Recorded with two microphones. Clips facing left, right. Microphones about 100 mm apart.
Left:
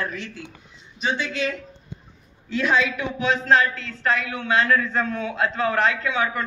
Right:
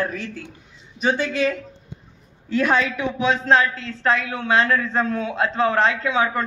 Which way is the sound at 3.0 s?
30° right (ahead or behind).